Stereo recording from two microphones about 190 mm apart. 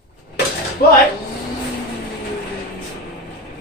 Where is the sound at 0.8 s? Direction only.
45° left (ahead or behind).